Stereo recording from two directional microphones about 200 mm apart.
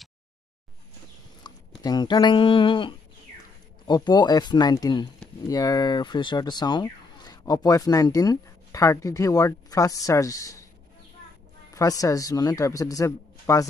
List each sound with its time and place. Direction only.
1.5 s a sound: 20° left (ahead or behind)
1.8 s speech: 20° left (ahead or behind)
11.7 s speech: 15° left (ahead or behind)